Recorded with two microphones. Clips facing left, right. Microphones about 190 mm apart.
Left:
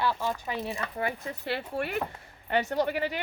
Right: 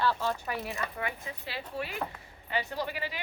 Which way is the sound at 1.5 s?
60° left (ahead or behind).